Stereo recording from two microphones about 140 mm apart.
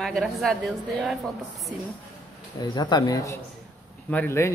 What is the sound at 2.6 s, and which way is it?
Speech, 30° left (ahead or behind).